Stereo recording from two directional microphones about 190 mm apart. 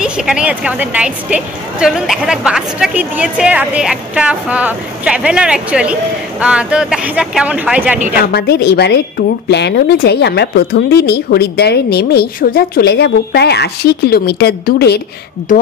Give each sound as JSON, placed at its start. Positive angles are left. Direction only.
{"t": 0.0, "sound": "a woman's voice", "side_deg": -5}
{"t": 8.2, "sound": "speech", "side_deg": 55}